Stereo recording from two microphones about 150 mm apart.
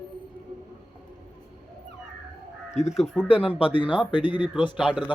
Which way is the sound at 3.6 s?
35° left (ahead or behind).